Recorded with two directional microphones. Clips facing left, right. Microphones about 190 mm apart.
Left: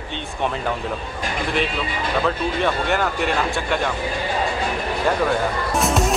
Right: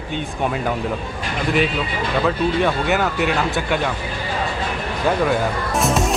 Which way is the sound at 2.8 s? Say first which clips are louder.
Right 2 dB; 5° right (ahead or behind).